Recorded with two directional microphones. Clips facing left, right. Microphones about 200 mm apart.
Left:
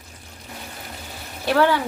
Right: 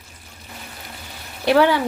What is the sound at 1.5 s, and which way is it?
Speech, 15° right (ahead or behind).